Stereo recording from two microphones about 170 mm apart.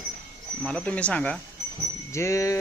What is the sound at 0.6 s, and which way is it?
Speech, 5° left (ahead or behind).